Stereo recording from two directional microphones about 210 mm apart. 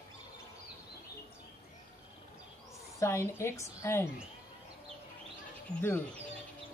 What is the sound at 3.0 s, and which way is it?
Speech, 15° left (ahead or behind).